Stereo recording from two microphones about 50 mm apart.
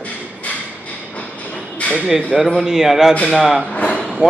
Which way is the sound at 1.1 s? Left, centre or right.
Left.